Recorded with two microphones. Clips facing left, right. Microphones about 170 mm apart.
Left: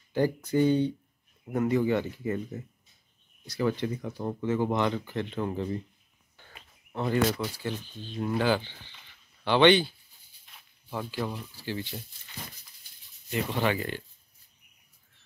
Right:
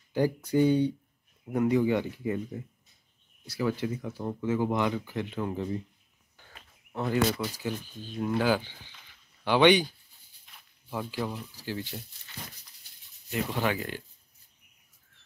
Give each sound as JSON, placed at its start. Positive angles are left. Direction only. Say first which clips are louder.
{"t": 0.1, "sound": "speech", "louder": "even", "side_deg": -10}
{"t": 6.9, "sound": "speech", "louder": "left 1 dB", "side_deg": -5}
{"t": 13.3, "sound": "speech", "louder": "left 1 dB", "side_deg": 0}